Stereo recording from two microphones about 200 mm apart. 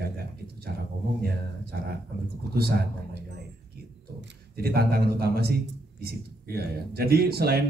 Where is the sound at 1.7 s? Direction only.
50° right (ahead or behind).